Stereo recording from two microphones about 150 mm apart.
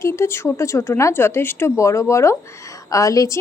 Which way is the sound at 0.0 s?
20° left (ahead or behind).